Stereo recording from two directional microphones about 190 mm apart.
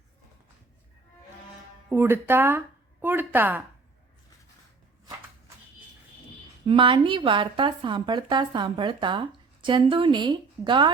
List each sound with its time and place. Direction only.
1.9 s speech: 10° right (ahead or behind)
6.7 s a woman's voice: 25° right (ahead or behind)